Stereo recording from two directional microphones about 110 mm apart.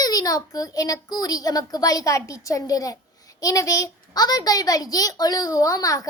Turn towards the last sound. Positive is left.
turn(degrees=30)  # may be behind; listen again after turning